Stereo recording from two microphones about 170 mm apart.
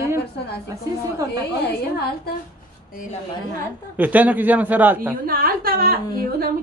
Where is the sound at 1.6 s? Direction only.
70° left (ahead or behind).